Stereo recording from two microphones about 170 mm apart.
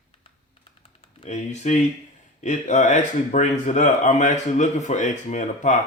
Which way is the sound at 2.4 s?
45° left (ahead or behind).